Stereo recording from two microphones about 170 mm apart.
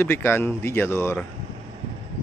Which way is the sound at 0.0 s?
15° left (ahead or behind).